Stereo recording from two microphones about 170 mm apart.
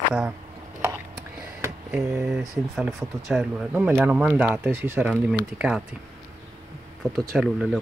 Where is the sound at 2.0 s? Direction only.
15° right (ahead or behind).